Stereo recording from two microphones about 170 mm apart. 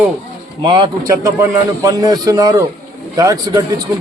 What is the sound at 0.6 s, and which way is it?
A man's voice, 25° right (ahead or behind).